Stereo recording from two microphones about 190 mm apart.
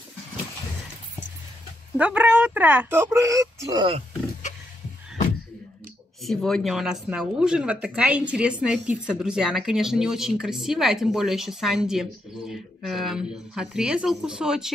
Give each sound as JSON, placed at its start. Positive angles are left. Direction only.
{"t": 2.0, "sound": "speech", "side_deg": -5}
{"t": 6.2, "sound": "speech", "side_deg": 0}